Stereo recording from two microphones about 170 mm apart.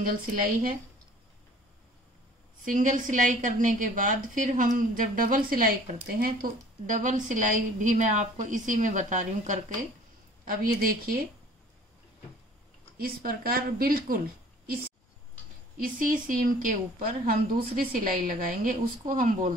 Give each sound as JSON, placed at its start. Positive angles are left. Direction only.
{"t": 0.0, "sound": "a woman's voice", "side_deg": -55}
{"t": 2.6, "sound": "a woman's voice", "side_deg": -50}
{"t": 12.9, "sound": "a woman's voice", "side_deg": -60}
{"t": 15.8, "sound": "a woman's voice", "side_deg": -55}